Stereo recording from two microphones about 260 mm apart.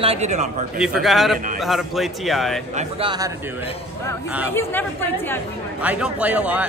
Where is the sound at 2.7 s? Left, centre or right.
Centre.